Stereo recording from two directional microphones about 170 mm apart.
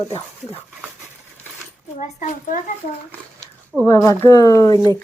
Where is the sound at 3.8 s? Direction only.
15° left (ahead or behind).